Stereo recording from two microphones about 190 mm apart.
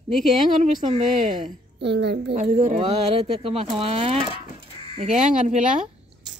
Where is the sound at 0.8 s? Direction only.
35° right (ahead or behind).